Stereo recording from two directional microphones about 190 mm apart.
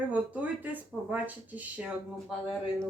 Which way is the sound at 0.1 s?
10° right (ahead or behind).